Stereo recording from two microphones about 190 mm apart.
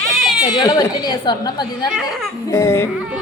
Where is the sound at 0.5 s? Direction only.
20° left (ahead or behind).